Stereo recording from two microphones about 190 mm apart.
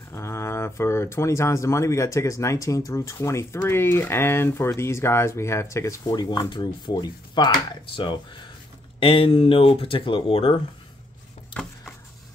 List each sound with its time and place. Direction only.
0.1 s speech: 15° left (ahead or behind)